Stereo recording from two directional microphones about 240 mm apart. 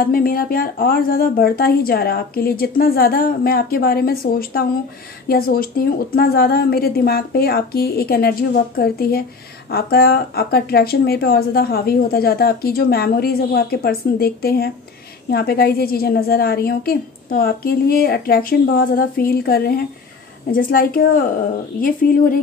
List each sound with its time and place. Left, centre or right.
0.0 s speech: left